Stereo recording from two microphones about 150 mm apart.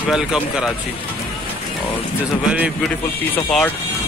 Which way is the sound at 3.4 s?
5° left (ahead or behind).